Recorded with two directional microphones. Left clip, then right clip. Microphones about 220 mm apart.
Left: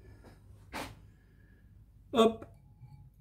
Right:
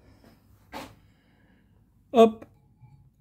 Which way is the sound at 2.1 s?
35° right (ahead or behind).